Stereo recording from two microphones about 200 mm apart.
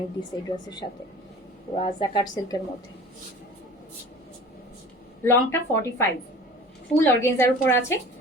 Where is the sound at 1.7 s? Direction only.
30° left (ahead or behind).